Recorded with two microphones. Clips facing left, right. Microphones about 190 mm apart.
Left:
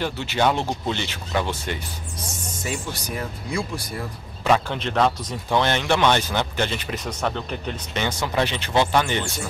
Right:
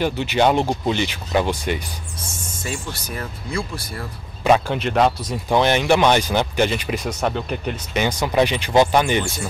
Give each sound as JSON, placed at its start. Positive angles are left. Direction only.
{"t": 0.0, "sound": "speech", "side_deg": -15}
{"t": 2.6, "sound": "speech", "side_deg": 15}
{"t": 4.5, "sound": "speech", "side_deg": -10}